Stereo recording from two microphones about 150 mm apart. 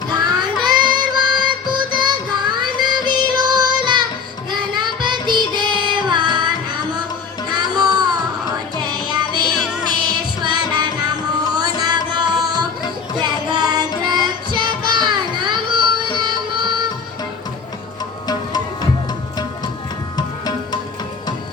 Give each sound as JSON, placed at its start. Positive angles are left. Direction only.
{"t": 0.1, "sound": "child singing", "side_deg": -30}
{"t": 4.7, "sound": "music", "side_deg": -30}
{"t": 18.3, "sound": "music", "side_deg": 25}